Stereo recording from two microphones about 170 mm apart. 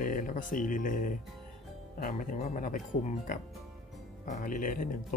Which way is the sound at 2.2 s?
50° left (ahead or behind).